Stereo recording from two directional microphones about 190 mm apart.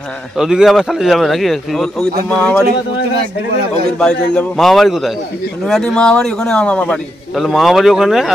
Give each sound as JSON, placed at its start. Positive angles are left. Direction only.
{"t": 0.4, "sound": "a man's voice", "side_deg": 0}
{"t": 4.0, "sound": "a man's voice", "side_deg": 5}